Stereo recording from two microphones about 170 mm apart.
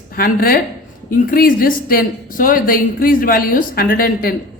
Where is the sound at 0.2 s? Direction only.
60° left (ahead or behind).